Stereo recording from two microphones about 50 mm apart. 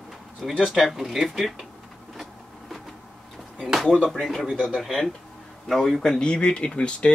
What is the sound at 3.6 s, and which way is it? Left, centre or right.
Speech, centre.